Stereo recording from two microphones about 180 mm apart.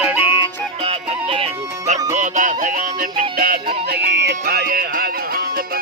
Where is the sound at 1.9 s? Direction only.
45° right (ahead or behind).